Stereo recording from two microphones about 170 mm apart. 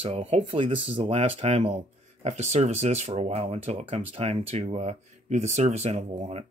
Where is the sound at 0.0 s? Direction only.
35° right (ahead or behind).